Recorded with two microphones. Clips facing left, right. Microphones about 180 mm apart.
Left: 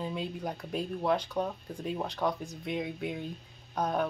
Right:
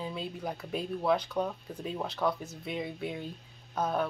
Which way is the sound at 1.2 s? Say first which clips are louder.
Even; 10° left (ahead or behind).